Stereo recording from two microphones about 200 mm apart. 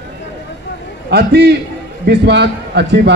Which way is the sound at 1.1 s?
55° right (ahead or behind).